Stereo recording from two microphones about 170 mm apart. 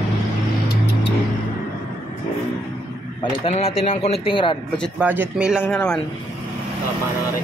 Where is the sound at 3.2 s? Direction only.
35° left (ahead or behind).